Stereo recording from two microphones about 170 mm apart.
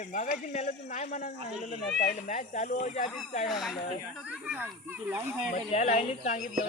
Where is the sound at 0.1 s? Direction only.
45° left (ahead or behind).